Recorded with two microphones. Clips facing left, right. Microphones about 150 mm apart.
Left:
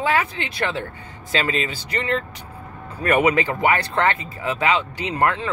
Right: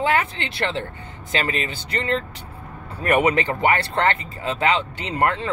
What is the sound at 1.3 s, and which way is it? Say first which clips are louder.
Speech: left 2 dB; 25° right (ahead or behind).